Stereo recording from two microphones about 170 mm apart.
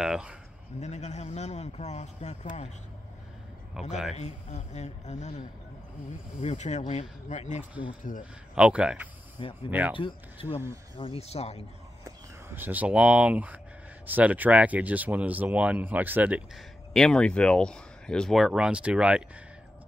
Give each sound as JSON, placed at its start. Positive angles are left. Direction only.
{"t": 0.0, "sound": "speech", "side_deg": -5}
{"t": 0.7, "sound": "speech", "side_deg": 40}
{"t": 3.8, "sound": "speech", "side_deg": 0}
{"t": 4.2, "sound": "speech", "side_deg": 45}
{"t": 6.4, "sound": "speech", "side_deg": 40}
{"t": 8.5, "sound": "speech", "side_deg": -5}
{"t": 9.9, "sound": "speech", "side_deg": 30}
{"t": 12.5, "sound": "speech", "side_deg": -10}